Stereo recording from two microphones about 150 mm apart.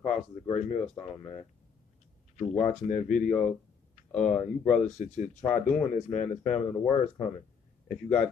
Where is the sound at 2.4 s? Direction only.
50° left (ahead or behind).